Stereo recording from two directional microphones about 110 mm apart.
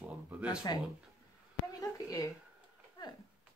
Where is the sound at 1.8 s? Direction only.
30° left (ahead or behind).